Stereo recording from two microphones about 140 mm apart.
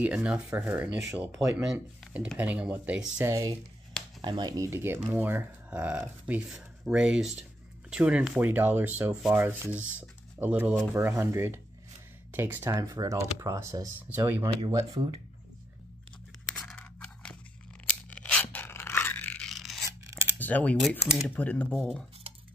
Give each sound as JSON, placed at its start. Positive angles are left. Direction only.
{"t": 0.0, "sound": "speech", "side_deg": -10}
{"t": 1.7, "sound": "speech", "side_deg": 0}
{"t": 3.3, "sound": "speech", "side_deg": -25}
{"t": 14.7, "sound": "speech", "side_deg": -30}
{"t": 16.7, "sound": "a sound", "side_deg": 5}
{"t": 20.3, "sound": "speech", "side_deg": 10}
{"t": 21.7, "sound": "speech", "side_deg": 0}